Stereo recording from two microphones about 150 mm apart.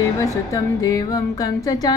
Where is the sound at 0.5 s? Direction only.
20° left (ahead or behind).